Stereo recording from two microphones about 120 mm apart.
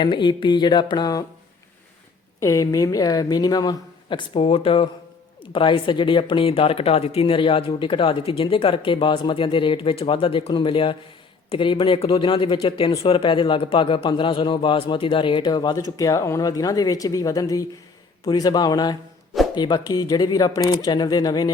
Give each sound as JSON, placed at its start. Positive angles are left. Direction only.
{"t": 0.0, "sound": "a man's voice", "side_deg": 40}
{"t": 2.4, "sound": "a man's voice", "side_deg": 25}